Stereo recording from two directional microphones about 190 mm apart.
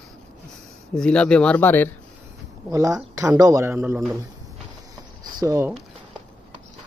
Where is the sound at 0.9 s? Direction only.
5° left (ahead or behind).